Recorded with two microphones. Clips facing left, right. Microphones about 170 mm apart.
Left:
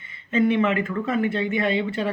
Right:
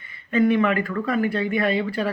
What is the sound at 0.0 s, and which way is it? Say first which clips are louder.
Speech: right 1 dB; 25° left (ahead or behind).